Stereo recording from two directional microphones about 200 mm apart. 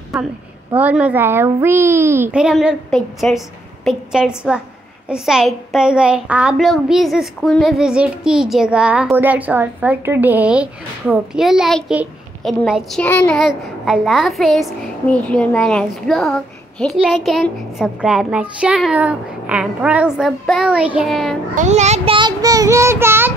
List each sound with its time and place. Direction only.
0.7 s a child's voice: 5° right (ahead or behind)
21.5 s a child's voice: 35° right (ahead or behind); by 23.3 s 10° right (ahead or behind)